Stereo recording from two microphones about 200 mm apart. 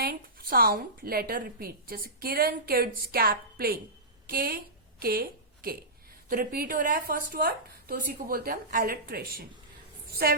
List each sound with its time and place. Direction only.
0.0 s a woman's voice: 50° right (ahead or behind)